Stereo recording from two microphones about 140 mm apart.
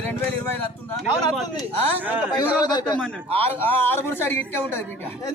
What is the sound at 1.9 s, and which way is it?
Speech, 15° right (ahead or behind).